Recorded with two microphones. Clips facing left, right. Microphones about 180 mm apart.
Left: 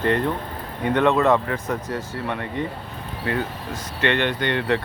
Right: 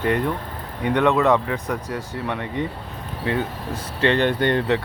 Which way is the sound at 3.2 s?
25° right (ahead or behind).